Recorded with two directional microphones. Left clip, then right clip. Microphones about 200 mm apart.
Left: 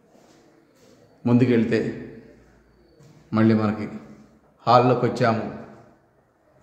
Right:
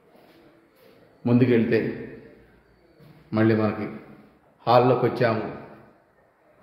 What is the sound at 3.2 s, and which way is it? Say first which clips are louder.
A man's voice: even; 10° left (ahead or behind).